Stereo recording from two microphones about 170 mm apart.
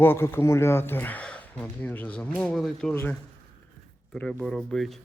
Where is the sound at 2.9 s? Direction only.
10° left (ahead or behind).